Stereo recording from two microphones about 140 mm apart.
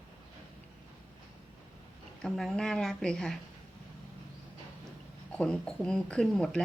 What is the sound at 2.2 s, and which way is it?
A woman's voice, centre (ahead or behind).